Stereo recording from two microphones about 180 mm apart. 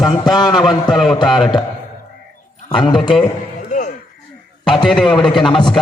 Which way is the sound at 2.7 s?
25° left (ahead or behind).